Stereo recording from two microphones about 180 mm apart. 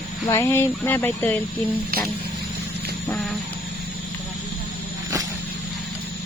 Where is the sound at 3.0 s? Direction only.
5° left (ahead or behind).